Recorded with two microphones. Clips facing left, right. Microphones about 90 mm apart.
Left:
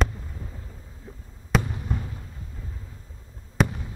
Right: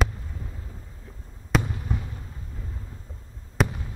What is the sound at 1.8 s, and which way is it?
Fireworks, centre (ahead or behind).